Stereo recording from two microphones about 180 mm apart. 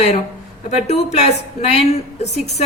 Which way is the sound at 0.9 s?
40° left (ahead or behind).